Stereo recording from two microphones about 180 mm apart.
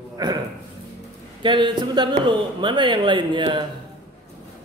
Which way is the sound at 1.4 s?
25° right (ahead or behind).